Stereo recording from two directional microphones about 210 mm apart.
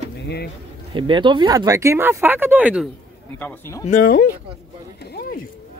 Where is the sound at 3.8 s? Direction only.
40° left (ahead or behind).